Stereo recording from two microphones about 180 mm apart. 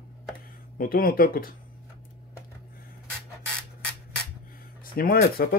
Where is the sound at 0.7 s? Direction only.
50° left (ahead or behind).